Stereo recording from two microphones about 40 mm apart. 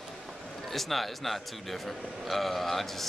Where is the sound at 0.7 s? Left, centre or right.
Centre.